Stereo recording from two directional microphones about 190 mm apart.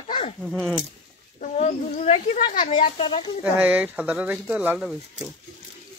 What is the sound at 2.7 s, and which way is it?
Speech, 25° left (ahead or behind).